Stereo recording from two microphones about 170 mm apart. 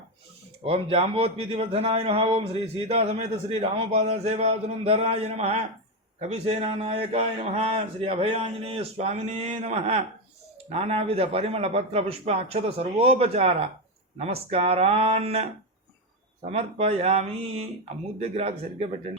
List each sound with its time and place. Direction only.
0.6 s a man's voice: 35° right (ahead or behind)